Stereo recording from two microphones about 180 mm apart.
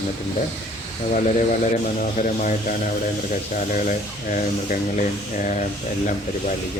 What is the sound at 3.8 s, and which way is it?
Speech, 50° left (ahead or behind).